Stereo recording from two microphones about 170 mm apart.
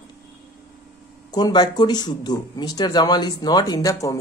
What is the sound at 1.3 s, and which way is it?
A man's voice, 25° left (ahead or behind).